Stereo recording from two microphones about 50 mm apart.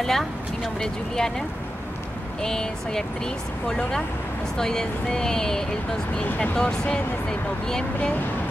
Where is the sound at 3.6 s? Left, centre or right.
Centre.